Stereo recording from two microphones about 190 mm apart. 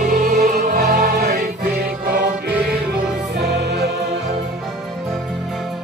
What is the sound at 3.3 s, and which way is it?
Music, 60° right (ahead or behind).